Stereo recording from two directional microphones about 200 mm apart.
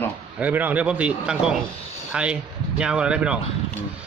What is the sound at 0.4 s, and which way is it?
A man's voice, 10° right (ahead or behind).